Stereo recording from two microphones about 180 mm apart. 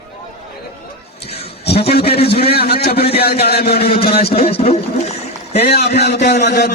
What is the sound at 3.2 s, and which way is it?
Speech, 60° left (ahead or behind).